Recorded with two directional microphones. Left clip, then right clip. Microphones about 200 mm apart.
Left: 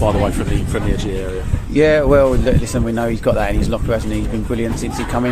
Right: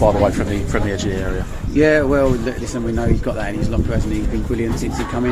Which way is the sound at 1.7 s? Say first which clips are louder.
Left 3 dB; 35° left (ahead or behind).